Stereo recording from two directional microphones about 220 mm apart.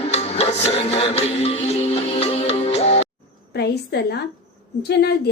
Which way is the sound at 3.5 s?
50° left (ahead or behind).